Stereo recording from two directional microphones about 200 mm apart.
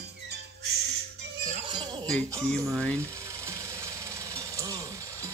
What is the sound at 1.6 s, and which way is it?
Music, 25° right (ahead or behind).